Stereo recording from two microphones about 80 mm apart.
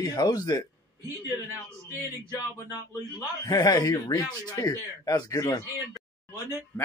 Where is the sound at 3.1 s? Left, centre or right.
Left.